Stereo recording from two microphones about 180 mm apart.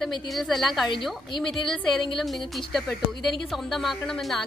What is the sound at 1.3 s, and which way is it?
Speech, 25° left (ahead or behind).